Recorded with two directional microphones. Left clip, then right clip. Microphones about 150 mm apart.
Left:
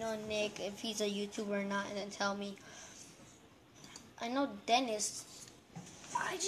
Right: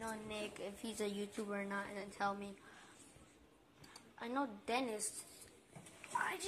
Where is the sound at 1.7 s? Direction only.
15° left (ahead or behind).